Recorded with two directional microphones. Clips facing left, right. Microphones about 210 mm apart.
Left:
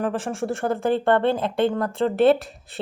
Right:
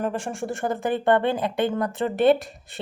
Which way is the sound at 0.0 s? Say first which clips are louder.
Left 2 dB; centre (ahead or behind).